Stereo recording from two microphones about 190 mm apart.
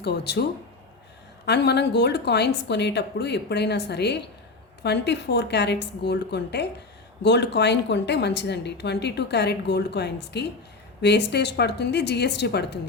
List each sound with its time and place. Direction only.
0.0 s a woman's voice: 60° left (ahead or behind)
1.5 s a woman's voice: 60° left (ahead or behind)